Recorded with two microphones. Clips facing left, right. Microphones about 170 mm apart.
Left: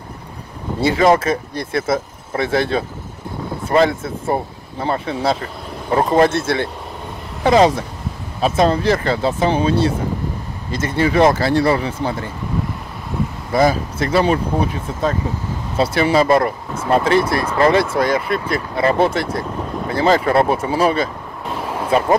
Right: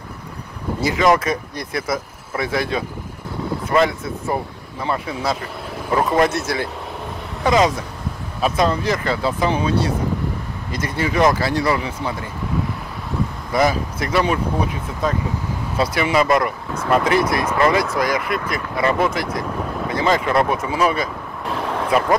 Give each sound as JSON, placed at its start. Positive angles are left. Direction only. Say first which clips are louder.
{"t": 0.7, "sound": "speech", "louder": "left 3 dB", "side_deg": 30}
{"t": 13.5, "sound": "speech", "louder": "left 3 dB", "side_deg": 30}
{"t": 15.8, "sound": "speech", "louder": "left 3 dB", "side_deg": 30}
{"t": 21.5, "sound": "vehicle", "louder": "right 1 dB", "side_deg": 5}